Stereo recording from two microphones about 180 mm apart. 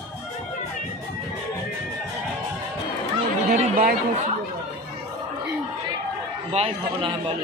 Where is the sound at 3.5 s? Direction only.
45° right (ahead or behind).